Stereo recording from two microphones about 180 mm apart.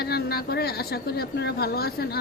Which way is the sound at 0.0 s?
60° left (ahead or behind).